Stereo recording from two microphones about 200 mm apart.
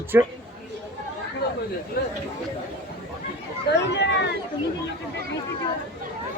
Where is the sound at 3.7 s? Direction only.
60° left (ahead or behind).